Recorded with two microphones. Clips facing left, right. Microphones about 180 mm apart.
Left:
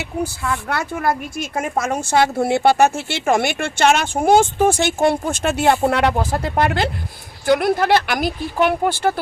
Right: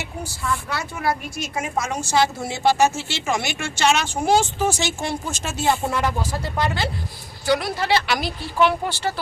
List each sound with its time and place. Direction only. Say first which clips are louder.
0.2 s a woman's voice: left 5 dB; 60° left (ahead or behind)